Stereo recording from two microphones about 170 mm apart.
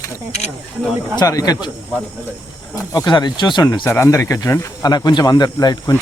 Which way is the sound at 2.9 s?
25° left (ahead or behind).